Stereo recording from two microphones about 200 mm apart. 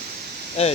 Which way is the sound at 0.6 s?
30° left (ahead or behind).